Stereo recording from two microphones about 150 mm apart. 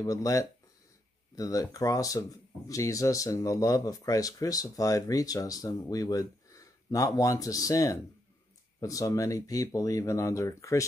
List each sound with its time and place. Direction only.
0.0 s speech: 25° left (ahead or behind)